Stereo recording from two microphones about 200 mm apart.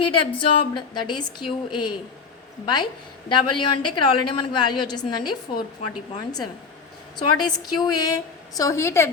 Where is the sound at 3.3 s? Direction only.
25° left (ahead or behind).